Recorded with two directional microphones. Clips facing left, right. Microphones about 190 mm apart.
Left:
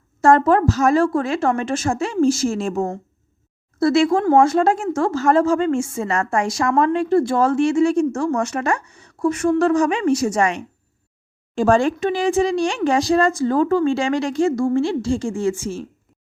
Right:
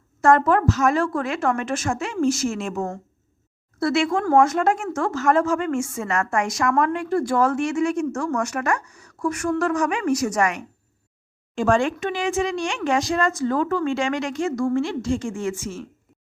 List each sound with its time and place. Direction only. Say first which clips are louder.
0.2 s a woman's voice: left 3 dB; 30° left (ahead or behind)